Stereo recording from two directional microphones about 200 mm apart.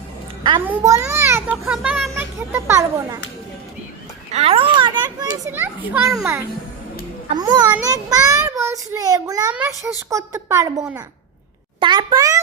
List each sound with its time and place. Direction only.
0.6 s a child's voice: 15° right (ahead or behind)
4.3 s a child's voice: 30° right (ahead or behind)